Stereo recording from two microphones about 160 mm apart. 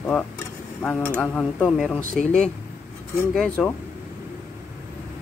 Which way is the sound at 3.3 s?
5° left (ahead or behind).